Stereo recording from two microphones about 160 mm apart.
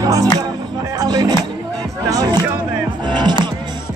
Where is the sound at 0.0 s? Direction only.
20° right (ahead or behind).